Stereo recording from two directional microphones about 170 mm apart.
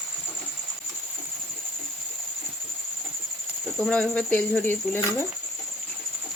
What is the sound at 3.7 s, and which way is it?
Speech, 5° left (ahead or behind).